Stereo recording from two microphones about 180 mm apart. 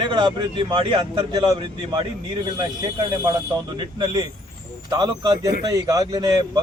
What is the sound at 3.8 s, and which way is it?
Speech, 25° right (ahead or behind).